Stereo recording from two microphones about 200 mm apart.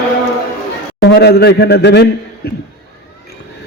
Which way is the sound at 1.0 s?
55° left (ahead or behind).